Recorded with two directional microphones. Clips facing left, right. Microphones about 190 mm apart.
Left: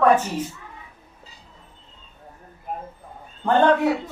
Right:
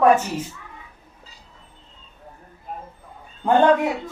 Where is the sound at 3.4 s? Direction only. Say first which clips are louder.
Right 1 dB; 10° right (ahead or behind).